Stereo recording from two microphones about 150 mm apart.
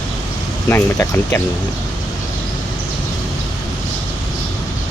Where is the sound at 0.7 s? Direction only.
20° left (ahead or behind).